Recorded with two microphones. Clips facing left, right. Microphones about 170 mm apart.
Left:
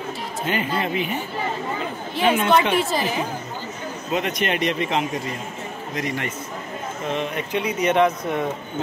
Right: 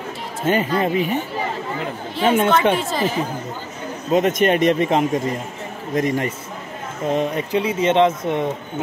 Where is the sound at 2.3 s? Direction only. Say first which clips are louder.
Right 3 dB; 50° right (ahead or behind).